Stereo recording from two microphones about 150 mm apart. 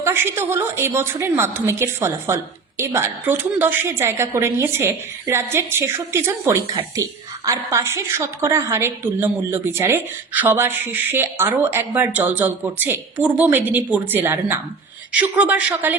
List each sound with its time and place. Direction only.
0.0 s a woman's voice: 15° right (ahead or behind)